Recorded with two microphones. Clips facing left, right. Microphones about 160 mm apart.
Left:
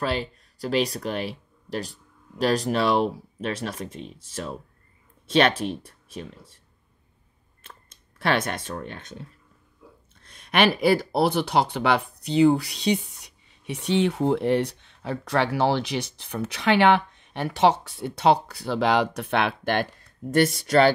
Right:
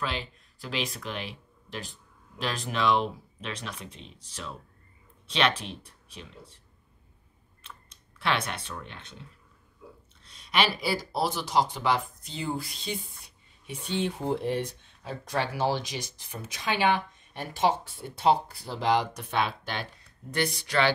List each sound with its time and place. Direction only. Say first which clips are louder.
0.0 s speech: left 7 dB; 40° left (ahead or behind)
8.2 s speech: left 5 dB; 45° left (ahead or behind)
10.2 s speech: left 6 dB; 55° left (ahead or behind)
20.2 s speech: left 9 dB; 45° left (ahead or behind)